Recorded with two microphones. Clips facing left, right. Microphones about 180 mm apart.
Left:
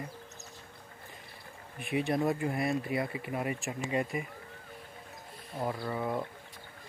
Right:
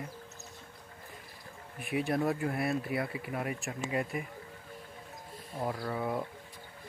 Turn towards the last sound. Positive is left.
turn(degrees=0)  # may be behind; listen again after turning